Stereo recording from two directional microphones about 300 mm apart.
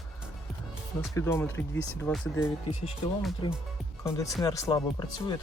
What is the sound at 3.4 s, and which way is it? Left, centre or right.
Speech, centre.